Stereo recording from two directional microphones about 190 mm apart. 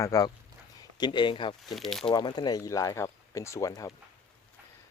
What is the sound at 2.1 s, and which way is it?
Speech, 20° left (ahead or behind).